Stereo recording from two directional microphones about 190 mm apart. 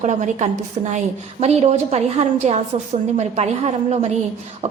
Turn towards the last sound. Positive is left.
turn(degrees=-35)  # may be behind; listen again after turning